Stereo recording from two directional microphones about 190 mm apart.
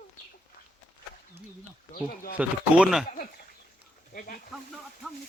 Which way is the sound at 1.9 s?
50° left (ahead or behind).